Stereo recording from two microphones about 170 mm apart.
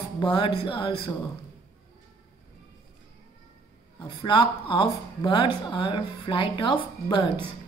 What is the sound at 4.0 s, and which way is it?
A woman's voice, 25° left (ahead or behind).